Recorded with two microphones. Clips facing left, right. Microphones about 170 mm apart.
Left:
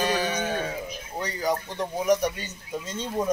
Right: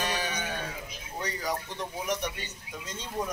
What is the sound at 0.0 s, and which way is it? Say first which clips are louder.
Sheep: left 7 dB; 35° left (ahead or behind).